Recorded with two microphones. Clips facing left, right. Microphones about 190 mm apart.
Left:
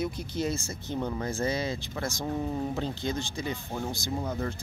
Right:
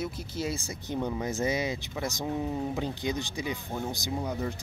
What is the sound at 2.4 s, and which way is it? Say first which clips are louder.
Speech: even; 5° right (ahead or behind).